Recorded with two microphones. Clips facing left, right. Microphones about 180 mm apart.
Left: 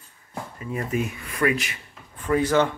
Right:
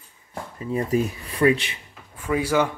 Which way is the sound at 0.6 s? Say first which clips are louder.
Right 4 dB; 30° right (ahead or behind).